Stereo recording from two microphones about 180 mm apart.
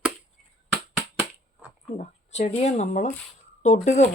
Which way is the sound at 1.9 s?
40° left (ahead or behind).